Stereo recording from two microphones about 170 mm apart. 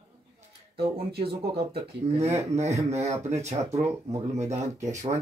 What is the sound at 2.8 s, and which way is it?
Speech, 40° right (ahead or behind).